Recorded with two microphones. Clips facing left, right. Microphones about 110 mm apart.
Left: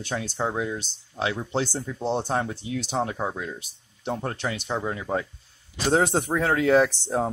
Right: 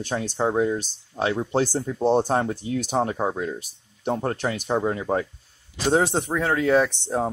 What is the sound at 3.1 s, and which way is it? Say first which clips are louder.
Speech: right 4 dB; 20° right (ahead or behind).